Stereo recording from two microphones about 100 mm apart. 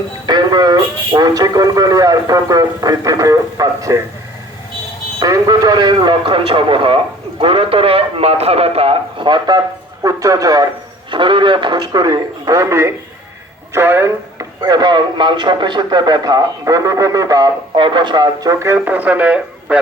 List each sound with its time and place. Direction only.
0.3 s a man's voice: 45° right (ahead or behind)
5.2 s a man's voice: 35° right (ahead or behind)
11.1 s speech: 55° right (ahead or behind); by 14.4 s 25° right (ahead or behind)
14.6 s speech: 45° right (ahead or behind)
17.7 s speech: 55° right (ahead or behind); by 18.7 s 40° right (ahead or behind)
18.7 s a man's voice: 15° right (ahead or behind)